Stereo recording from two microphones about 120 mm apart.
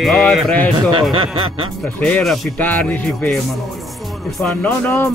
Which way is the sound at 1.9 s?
10° left (ahead or behind).